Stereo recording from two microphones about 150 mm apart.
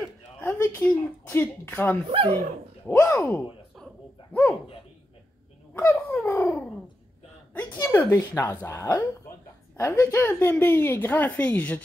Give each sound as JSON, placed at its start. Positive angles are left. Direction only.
{"t": 0.4, "sound": "a woman's voice", "side_deg": 15}
{"t": 2.0, "sound": "speech", "side_deg": -35}
{"t": 2.9, "sound": "a woman's voice", "side_deg": 20}
{"t": 5.8, "sound": "a sound", "side_deg": 15}
{"t": 7.5, "sound": "a woman's voice", "side_deg": 10}